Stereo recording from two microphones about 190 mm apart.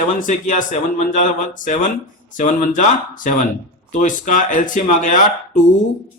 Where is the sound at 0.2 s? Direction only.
45° left (ahead or behind).